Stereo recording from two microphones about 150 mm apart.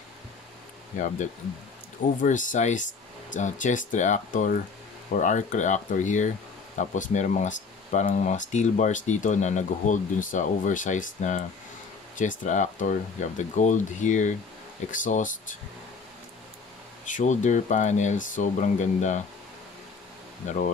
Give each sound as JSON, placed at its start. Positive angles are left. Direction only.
{"t": 0.9, "sound": "speech", "side_deg": 55}
{"t": 17.1, "sound": "speech", "side_deg": 55}
{"t": 20.4, "sound": "speech", "side_deg": 60}